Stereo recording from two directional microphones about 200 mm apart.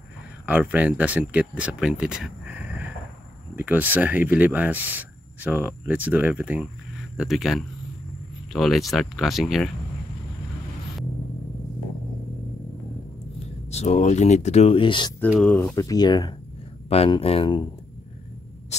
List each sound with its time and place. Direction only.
0.5 s speech: 5° right (ahead or behind)
13.7 s speech: 35° left (ahead or behind)
15.1 s speech: 5° left (ahead or behind)
15.7 s speech: 15° left (ahead or behind)
18.7 s a sound: 35° left (ahead or behind)